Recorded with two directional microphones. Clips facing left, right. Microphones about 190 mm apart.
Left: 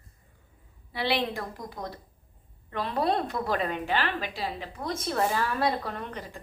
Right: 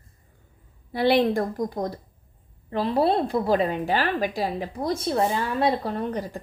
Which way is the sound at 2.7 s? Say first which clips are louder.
Right 6 dB; 30° right (ahead or behind).